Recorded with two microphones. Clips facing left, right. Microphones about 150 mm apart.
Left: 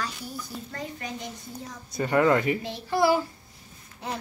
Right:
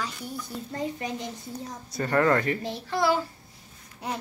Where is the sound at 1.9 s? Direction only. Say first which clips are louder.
Left 1 dB; 10° left (ahead or behind).